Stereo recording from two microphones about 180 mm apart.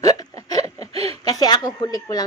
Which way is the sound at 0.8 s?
35° right (ahead or behind).